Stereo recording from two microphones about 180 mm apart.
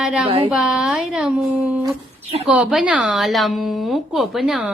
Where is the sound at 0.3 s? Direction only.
30° right (ahead or behind).